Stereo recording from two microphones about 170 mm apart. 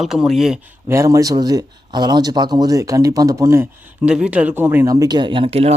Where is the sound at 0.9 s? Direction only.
15° right (ahead or behind); by 5.7 s 35° right (ahead or behind).